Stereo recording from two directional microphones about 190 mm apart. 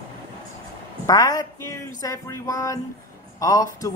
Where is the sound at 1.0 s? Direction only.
20° left (ahead or behind).